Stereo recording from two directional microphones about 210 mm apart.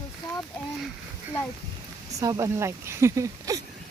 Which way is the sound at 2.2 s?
15° right (ahead or behind).